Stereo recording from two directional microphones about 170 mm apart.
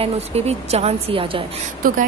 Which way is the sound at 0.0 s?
40° right (ahead or behind).